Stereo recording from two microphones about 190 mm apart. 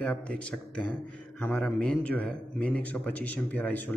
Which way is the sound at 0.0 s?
5° left (ahead or behind).